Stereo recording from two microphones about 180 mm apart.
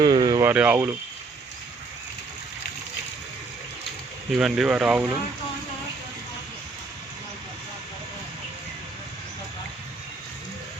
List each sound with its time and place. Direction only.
0.0 s a sound: 20° right (ahead or behind)
0.5 s speech: 5° right (ahead or behind)
4.4 s speech: 5° right (ahead or behind)